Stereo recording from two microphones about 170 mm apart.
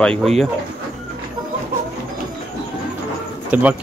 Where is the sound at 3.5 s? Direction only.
10° right (ahead or behind).